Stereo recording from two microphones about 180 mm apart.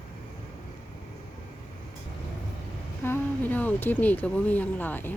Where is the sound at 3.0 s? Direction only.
10° left (ahead or behind).